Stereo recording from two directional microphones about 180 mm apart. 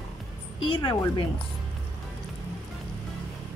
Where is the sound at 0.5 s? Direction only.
25° left (ahead or behind).